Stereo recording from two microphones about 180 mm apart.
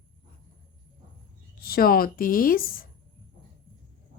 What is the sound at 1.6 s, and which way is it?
A woman's voice, 55° left (ahead or behind).